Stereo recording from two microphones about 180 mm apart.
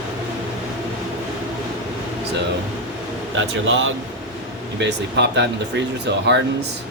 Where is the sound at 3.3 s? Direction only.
90° right.